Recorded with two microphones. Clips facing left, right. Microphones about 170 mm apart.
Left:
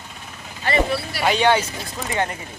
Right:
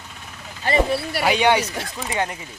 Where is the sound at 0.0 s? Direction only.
10° left (ahead or behind).